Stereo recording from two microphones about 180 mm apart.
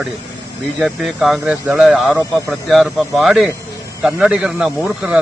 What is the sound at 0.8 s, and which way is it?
A man's voice, 5° right (ahead or behind).